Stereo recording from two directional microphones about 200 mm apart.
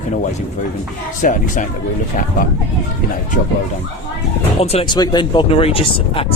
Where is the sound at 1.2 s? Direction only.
40° left (ahead or behind).